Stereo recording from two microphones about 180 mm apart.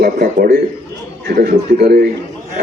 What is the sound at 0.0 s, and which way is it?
Speech, 55° right (ahead or behind).